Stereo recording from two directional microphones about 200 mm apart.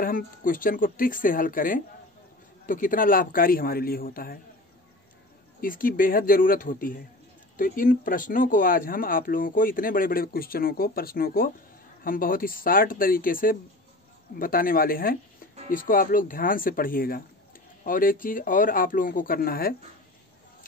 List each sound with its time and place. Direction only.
0.0 s speech: 45° left (ahead or behind)
5.6 s speech: 45° left (ahead or behind)